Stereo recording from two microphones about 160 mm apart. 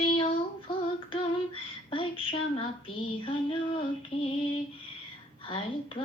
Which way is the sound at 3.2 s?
35° left (ahead or behind).